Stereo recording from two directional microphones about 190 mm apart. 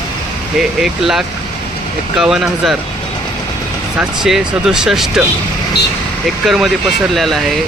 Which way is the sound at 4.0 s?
Centre (ahead or behind).